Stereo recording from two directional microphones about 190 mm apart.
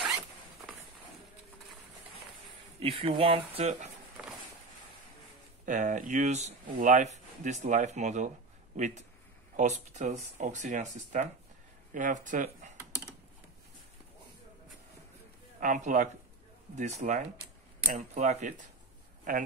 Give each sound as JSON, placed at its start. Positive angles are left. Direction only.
{"t": 2.8, "sound": "speech", "side_deg": -30}
{"t": 5.7, "sound": "speech", "side_deg": -40}
{"t": 15.6, "sound": "speech", "side_deg": -45}